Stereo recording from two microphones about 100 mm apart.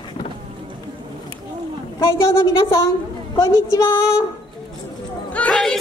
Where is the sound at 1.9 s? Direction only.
30° left (ahead or behind).